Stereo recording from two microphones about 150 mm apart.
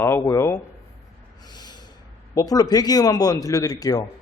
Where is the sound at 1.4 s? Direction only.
30° left (ahead or behind).